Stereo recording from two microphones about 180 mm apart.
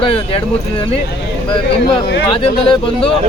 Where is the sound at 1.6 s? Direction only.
70° left (ahead or behind).